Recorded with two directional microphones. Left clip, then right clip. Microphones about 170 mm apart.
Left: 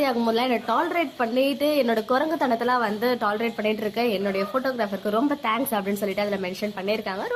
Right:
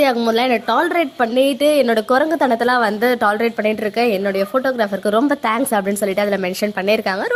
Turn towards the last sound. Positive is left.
turn(degrees=-25)  # may be behind; listen again after turning